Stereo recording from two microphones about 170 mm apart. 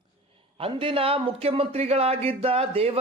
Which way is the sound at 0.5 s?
30° right (ahead or behind).